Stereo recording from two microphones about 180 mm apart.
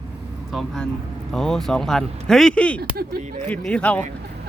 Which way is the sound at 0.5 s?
Centre (ahead or behind).